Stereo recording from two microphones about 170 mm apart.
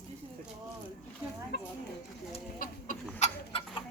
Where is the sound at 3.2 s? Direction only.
40° left (ahead or behind).